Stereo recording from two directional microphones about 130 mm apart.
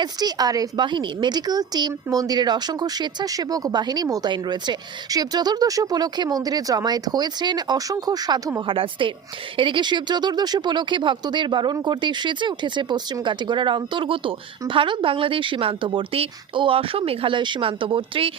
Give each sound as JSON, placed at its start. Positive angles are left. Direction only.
{"t": 0.0, "sound": "a woman's voice", "side_deg": -30}
{"t": 8.6, "sound": "a woman's voice", "side_deg": -40}